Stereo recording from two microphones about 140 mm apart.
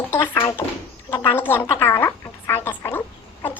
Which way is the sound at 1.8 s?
20° left (ahead or behind).